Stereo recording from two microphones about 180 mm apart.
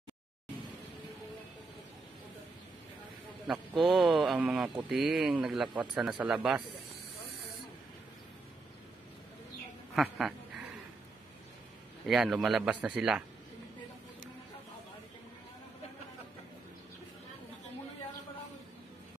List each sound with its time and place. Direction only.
3.4 s speech: centre (ahead or behind)
10.0 s speech: centre (ahead or behind)
12.1 s speech: centre (ahead or behind)